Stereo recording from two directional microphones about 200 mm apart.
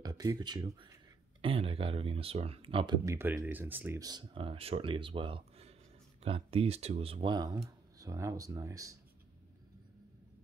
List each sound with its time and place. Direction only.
0.0 s speech: 20° right (ahead or behind)
3.2 s speech: 10° right (ahead or behind)